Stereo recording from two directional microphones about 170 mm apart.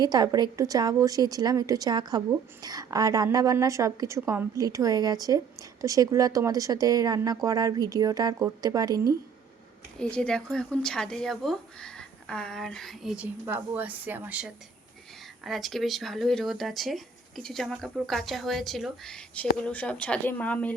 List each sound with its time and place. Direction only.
0.0 s a woman's voice: 25° right (ahead or behind)
10.0 s speech: 5° left (ahead or behind)